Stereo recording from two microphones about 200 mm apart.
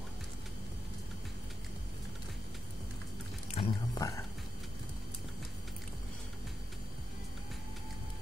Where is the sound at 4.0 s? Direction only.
15° left (ahead or behind).